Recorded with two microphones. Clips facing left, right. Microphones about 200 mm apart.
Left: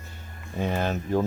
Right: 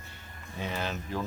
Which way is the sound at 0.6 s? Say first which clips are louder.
Left 7 dB; 50° left (ahead or behind).